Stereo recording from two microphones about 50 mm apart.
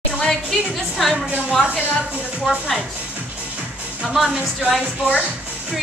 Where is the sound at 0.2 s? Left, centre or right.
Centre.